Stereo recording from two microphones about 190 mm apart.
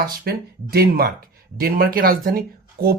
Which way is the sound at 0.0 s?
55° right (ahead or behind).